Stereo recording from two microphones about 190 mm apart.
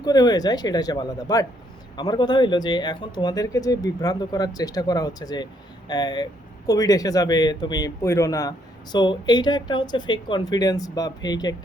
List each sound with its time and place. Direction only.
0.0 s speech: 20° left (ahead or behind)